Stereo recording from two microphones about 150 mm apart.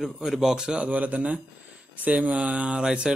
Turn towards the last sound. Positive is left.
turn(degrees=-5)  # may be behind; listen again after turning